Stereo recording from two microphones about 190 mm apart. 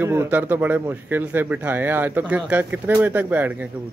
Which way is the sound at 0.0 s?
10° right (ahead or behind).